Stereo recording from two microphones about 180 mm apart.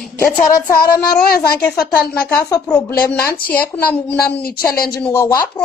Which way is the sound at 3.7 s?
10° left (ahead or behind).